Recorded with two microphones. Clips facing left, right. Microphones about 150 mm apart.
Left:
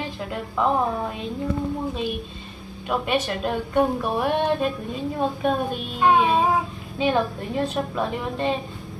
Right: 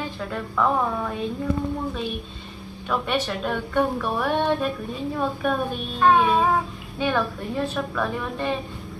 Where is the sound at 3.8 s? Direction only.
30° left (ahead or behind).